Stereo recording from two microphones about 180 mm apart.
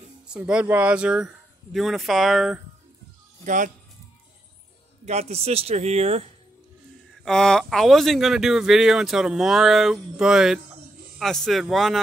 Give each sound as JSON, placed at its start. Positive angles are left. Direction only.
{"t": 0.3, "sound": "speech", "side_deg": -5}
{"t": 3.4, "sound": "speech", "side_deg": -45}
{"t": 5.0, "sound": "speech", "side_deg": -35}
{"t": 7.2, "sound": "speech", "side_deg": 5}